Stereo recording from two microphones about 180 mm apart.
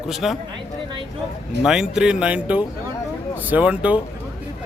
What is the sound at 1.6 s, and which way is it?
A man's voice, 5° right (ahead or behind).